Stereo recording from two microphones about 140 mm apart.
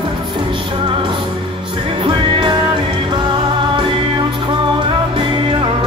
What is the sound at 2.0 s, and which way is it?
Music, 35° right (ahead or behind).